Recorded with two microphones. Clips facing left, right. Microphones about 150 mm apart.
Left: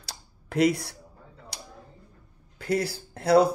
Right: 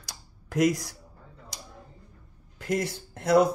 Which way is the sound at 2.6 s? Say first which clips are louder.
Left 2 dB; 30° left (ahead or behind).